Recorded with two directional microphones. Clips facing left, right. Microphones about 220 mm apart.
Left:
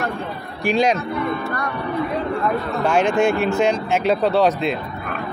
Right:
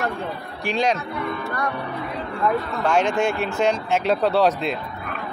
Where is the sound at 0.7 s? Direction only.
10° left (ahead or behind).